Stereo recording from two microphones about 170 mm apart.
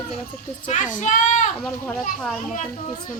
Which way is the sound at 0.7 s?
45° left (ahead or behind).